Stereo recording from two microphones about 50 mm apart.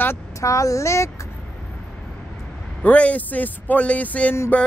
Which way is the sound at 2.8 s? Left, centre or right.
Left.